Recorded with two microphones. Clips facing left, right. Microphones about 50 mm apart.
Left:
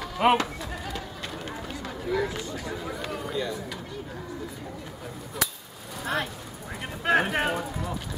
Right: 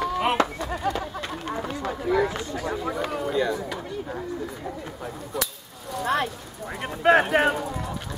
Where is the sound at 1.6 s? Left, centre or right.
Centre.